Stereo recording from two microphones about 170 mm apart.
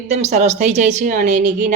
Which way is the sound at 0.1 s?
45° right (ahead or behind).